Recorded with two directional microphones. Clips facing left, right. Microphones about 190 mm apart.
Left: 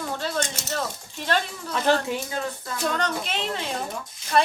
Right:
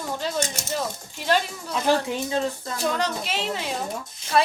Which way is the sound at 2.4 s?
25° right (ahead or behind).